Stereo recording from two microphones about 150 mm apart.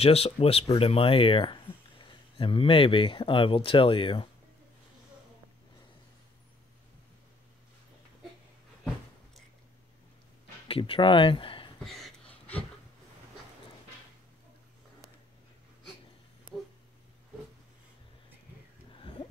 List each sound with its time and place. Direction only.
0.0 s speech: 40° left (ahead or behind)
10.7 s speech: 35° left (ahead or behind)
11.8 s a sound: centre (ahead or behind)